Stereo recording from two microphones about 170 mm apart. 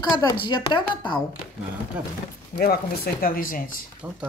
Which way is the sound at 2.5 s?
60° left (ahead or behind).